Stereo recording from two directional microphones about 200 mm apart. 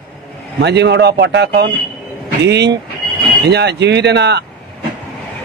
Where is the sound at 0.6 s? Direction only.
60° right (ahead or behind).